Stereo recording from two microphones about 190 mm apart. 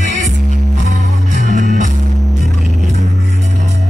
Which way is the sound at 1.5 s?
40° right (ahead or behind).